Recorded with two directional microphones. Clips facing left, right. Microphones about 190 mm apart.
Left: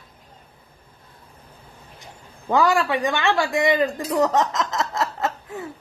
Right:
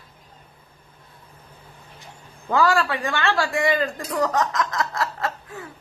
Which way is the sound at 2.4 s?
20° left (ahead or behind).